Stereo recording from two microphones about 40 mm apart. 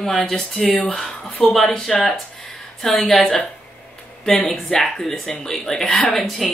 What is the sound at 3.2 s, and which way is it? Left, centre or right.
Speech, left.